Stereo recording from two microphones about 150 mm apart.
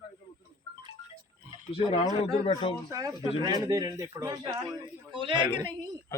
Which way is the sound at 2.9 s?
20° right (ahead or behind).